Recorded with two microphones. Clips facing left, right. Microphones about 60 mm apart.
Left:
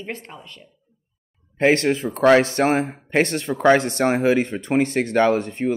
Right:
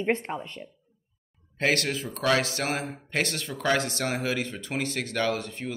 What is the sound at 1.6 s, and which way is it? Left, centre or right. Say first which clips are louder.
Speech: left 8 dB; left.